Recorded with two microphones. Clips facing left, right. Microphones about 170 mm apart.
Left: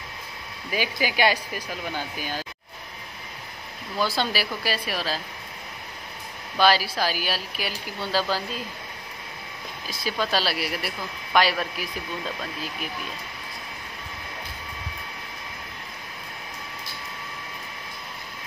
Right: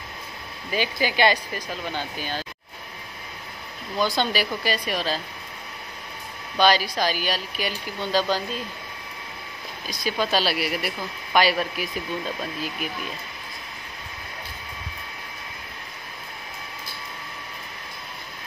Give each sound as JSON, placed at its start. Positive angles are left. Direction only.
{"t": 0.7, "sound": "speech", "side_deg": 10}
{"t": 4.0, "sound": "speech", "side_deg": 5}
{"t": 6.6, "sound": "speech", "side_deg": 5}
{"t": 9.8, "sound": "speech", "side_deg": 0}